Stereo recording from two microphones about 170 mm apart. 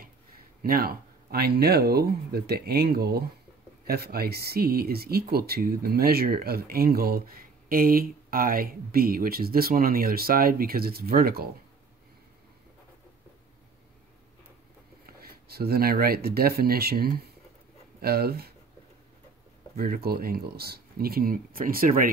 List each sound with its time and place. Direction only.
0.6 s speech: 60° right (ahead or behind)
15.0 s speech: 65° right (ahead or behind)
19.8 s speech: 60° right (ahead or behind)